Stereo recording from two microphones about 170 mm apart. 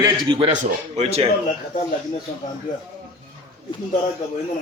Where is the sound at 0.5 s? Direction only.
45° right (ahead or behind).